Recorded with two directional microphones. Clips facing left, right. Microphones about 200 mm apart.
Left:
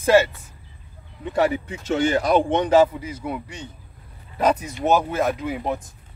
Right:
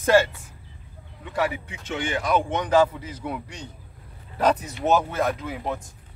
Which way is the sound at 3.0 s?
10° left (ahead or behind).